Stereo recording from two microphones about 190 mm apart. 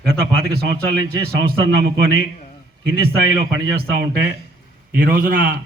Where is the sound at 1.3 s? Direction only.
60° right (ahead or behind).